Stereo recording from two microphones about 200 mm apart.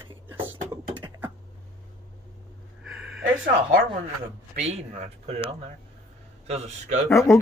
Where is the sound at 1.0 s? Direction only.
20° right (ahead or behind).